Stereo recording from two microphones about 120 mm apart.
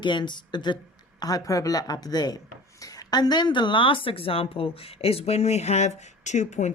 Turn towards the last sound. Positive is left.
turn(degrees=75)  # may be behind; listen again after turning